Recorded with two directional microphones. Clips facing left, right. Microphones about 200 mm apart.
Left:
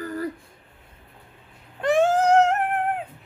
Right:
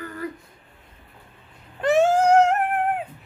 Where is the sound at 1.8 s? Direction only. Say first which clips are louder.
Right 1 dB; 5° right (ahead or behind).